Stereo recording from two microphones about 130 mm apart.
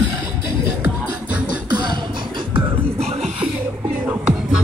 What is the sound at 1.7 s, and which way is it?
Beatboxing, 35° right (ahead or behind).